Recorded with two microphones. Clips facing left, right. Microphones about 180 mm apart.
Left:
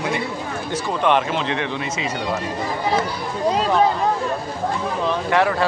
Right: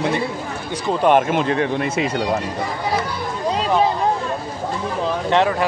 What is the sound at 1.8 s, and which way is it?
Speech, 60° right (ahead or behind).